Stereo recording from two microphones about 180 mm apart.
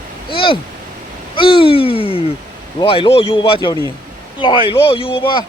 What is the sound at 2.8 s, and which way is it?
Speech, 30° left (ahead or behind).